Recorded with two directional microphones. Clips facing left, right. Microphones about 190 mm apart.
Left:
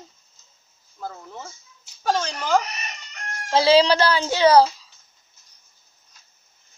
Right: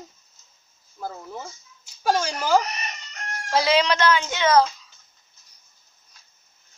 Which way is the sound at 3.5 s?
30° left (ahead or behind).